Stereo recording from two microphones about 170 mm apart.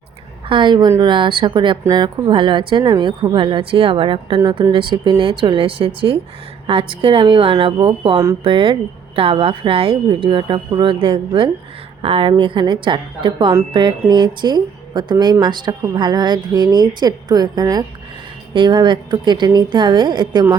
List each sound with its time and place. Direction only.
0.4 s speech: 30° right (ahead or behind)